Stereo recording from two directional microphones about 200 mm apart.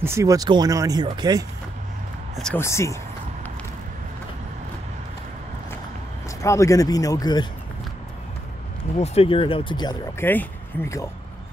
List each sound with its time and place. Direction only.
0.0 s speech: 15° right (ahead or behind)
2.3 s speech: 5° left (ahead or behind)
2.6 s speech: 15° left (ahead or behind)
6.4 s speech: 15° left (ahead or behind)
9.0 s speech: 30° left (ahead or behind)
10.2 s speech: 10° left (ahead or behind)